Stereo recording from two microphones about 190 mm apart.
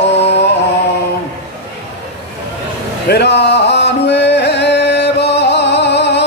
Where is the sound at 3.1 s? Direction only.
60° left (ahead or behind).